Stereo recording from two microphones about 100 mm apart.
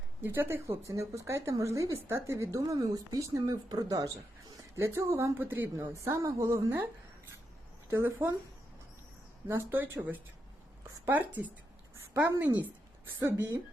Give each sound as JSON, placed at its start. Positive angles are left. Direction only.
{"t": 0.2, "sound": "a woman's voice", "side_deg": -20}
{"t": 9.5, "sound": "a woman's voice", "side_deg": -25}